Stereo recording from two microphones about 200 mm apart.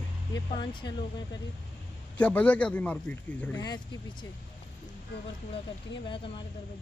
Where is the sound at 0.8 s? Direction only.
20° left (ahead or behind).